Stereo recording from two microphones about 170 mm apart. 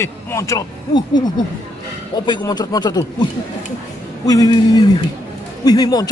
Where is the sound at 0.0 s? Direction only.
15° left (ahead or behind).